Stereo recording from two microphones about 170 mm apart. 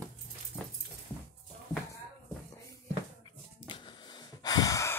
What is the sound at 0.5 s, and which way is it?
Dog, 5° right (ahead or behind).